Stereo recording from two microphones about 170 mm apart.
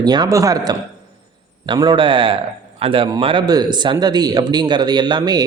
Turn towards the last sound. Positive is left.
turn(degrees=-25)  # may be behind; listen again after turning